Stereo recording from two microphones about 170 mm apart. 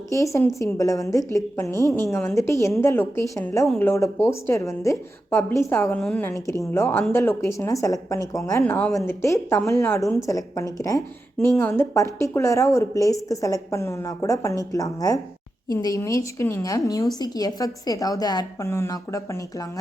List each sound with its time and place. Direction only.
0.3 s a woman's voice: 15° left (ahead or behind)
2.2 s a woman's voice: 15° left (ahead or behind)
9.0 s a woman's voice: 15° left (ahead or behind)